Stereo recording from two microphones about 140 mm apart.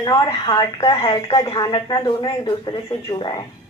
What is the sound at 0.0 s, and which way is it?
A woman's voice, 30° left (ahead or behind).